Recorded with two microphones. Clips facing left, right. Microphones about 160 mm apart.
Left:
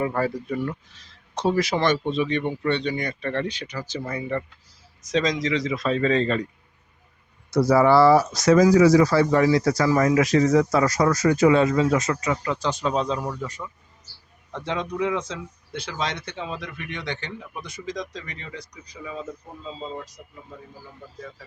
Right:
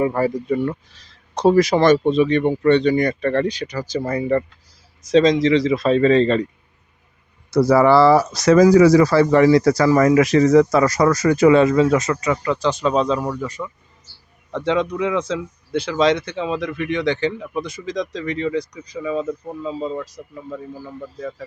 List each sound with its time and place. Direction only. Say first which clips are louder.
0.0 s speech: right 5 dB; 15° right (ahead or behind)
0.5 s speech: right 7 dB; 30° right (ahead or behind)
5.0 s speech: right 9 dB; 30° right (ahead or behind)
7.5 s speech: right 3 dB; 85° right
19.6 s speech: right 8 dB; 75° right (ahead or behind)